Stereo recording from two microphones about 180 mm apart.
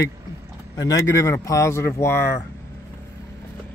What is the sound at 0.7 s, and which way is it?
Speech, 20° left (ahead or behind).